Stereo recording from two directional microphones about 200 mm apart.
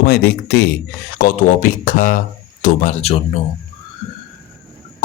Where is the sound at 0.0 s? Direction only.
55° left (ahead or behind).